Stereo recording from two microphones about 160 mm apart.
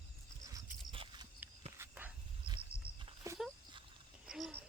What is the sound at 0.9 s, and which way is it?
Walk, 30° right (ahead or behind).